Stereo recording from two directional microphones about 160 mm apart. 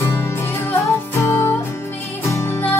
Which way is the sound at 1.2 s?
15° left (ahead or behind).